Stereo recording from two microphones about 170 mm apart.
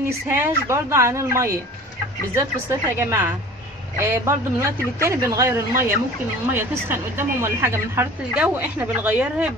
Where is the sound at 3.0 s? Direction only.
15° right (ahead or behind).